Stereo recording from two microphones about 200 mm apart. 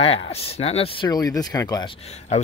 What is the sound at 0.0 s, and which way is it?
Speech, 30° left (ahead or behind).